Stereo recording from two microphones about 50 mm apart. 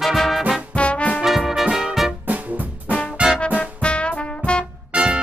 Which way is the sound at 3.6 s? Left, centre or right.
Left.